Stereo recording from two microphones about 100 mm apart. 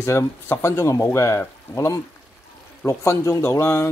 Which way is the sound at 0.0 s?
30° left (ahead or behind).